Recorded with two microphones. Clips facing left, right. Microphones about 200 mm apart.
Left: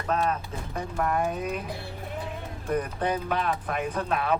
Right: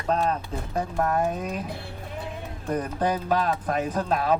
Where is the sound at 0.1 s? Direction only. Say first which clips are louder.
Right 3 dB; 35° right (ahead or behind).